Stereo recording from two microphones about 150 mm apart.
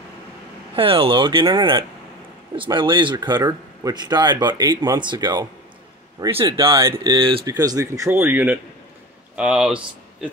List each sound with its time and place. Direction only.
0.7 s speech: 35° right (ahead or behind); by 10.4 s 5° right (ahead or behind)